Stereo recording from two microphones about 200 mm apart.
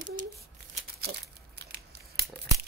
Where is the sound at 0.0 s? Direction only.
40° right (ahead or behind).